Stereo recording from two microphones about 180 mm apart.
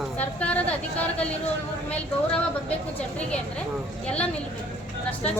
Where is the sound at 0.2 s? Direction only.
10° left (ahead or behind).